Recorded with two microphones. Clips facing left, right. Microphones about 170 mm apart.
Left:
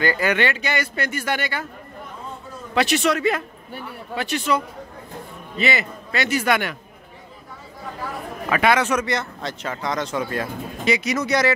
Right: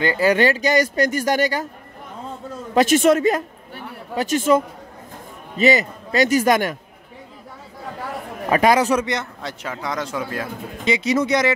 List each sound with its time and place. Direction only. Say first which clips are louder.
0.0 s speech: right 4 dB; 30° right (ahead or behind)
2.7 s a man's voice: right 5 dB; 45° right (ahead or behind)
8.5 s speech: right 3 dB; 35° right (ahead or behind)
9.0 s a man's voice: even; 15° right (ahead or behind)
10.9 s speech: right 3 dB; 30° right (ahead or behind)